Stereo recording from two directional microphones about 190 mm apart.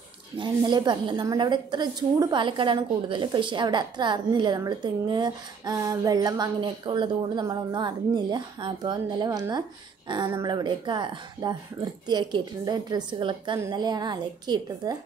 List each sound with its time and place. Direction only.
0.4 s a woman's voice: 25° right (ahead or behind)